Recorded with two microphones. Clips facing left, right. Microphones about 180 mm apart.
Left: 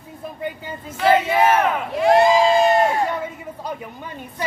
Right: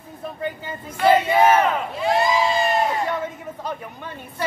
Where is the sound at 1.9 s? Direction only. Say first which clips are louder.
Left 8 dB; 70° left (ahead or behind).